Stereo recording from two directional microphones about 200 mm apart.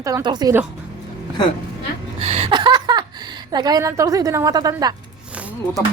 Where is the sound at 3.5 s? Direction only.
20° right (ahead or behind).